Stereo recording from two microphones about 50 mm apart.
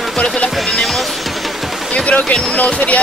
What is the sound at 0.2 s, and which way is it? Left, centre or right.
Speech, left.